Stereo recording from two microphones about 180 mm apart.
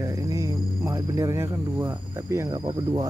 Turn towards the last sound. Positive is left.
turn(degrees=-20)  # may be behind; listen again after turning